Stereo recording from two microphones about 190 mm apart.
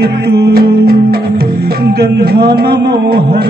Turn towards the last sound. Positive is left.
turn(degrees=-55)  # may be behind; listen again after turning